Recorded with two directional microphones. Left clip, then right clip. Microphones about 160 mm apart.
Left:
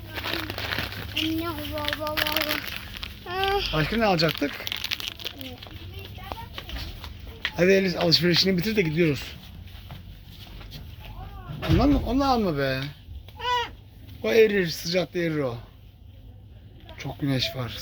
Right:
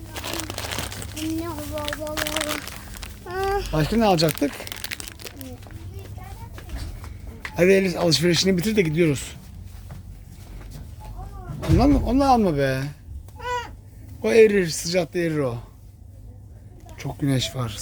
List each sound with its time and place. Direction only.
0.1 s crumpling: 15° left (ahead or behind)
1.1 s speech: 15° right (ahead or behind)
4.0 s speech: 35° right (ahead or behind)
4.9 s crumpling: 50° right (ahead or behind)
7.5 s speech: 15° right (ahead or behind)
12.0 s speech: 35° right (ahead or behind)
13.4 s cat: 5° right (ahead or behind)
14.2 s speech: 25° right (ahead or behind)
17.0 s speech: 25° right (ahead or behind)